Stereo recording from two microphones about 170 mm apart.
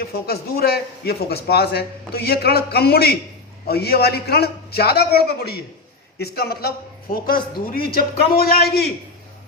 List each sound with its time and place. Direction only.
0.0 s a man's voice: 70° left (ahead or behind)